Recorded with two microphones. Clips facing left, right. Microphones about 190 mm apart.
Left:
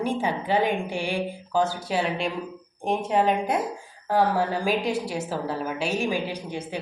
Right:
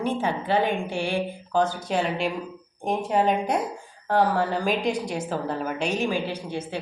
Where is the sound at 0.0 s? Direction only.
10° left (ahead or behind).